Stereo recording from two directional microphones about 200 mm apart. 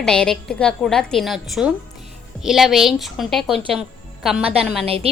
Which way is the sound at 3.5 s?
25° right (ahead or behind).